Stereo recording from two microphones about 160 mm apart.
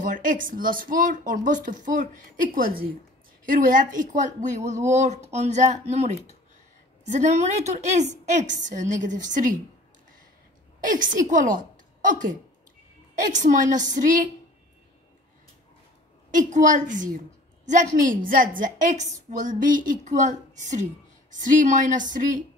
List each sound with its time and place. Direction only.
0.0 s a woman's voice: 55° right (ahead or behind)
10.8 s a woman's voice: 55° right (ahead or behind)
16.3 s a woman's voice: 50° right (ahead or behind)